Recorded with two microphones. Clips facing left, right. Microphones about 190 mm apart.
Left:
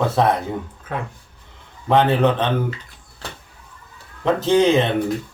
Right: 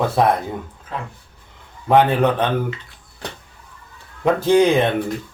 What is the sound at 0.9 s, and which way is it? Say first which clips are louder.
Speech: left 2 dB; 60° left (ahead or behind).